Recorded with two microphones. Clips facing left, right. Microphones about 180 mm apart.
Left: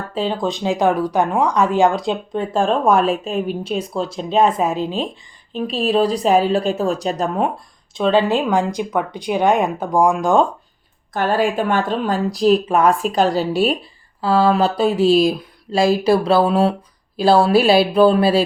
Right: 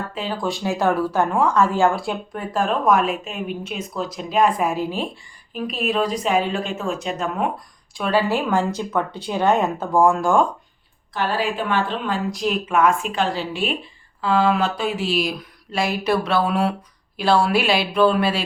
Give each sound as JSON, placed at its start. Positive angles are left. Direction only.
{"t": 0.1, "sound": "a woman's voice", "side_deg": 30}
{"t": 7.9, "sound": "speech", "side_deg": 20}
{"t": 11.1, "sound": "a woman's voice", "side_deg": 50}